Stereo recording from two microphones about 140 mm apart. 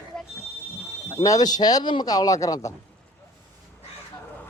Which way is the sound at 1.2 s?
25° left (ahead or behind).